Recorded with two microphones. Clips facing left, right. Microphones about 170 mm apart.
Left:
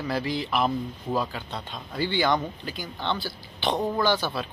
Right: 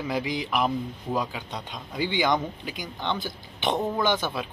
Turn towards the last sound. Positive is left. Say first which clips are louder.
# left 1 dB
turn(degrees=-20)  # may be behind; listen again after turning